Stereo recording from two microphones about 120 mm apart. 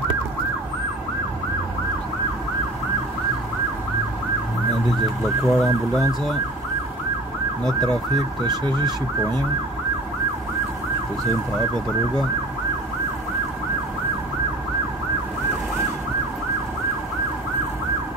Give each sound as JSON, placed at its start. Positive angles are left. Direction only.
{"t": 5.5, "sound": "ambulance", "side_deg": 5}
{"t": 8.5, "sound": "emergency vehicle", "side_deg": -35}